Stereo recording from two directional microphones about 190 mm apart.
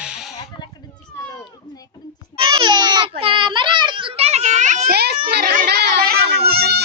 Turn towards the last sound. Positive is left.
turn(degrees=-55)  # may be behind; listen again after turning